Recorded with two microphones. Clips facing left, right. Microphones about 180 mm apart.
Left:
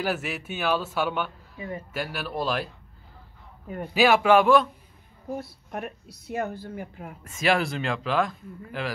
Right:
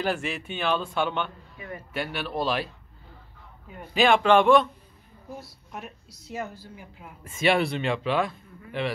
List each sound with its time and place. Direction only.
0.0 s speech: 5° left (ahead or behind)
3.9 s speech: 5° left (ahead or behind)
5.3 s speech: 55° left (ahead or behind)
7.2 s speech: centre (ahead or behind)